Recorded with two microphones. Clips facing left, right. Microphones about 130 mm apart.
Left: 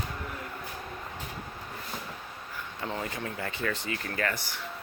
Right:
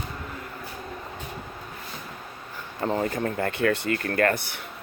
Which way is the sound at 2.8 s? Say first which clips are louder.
Right 9 dB; 40° right (ahead or behind).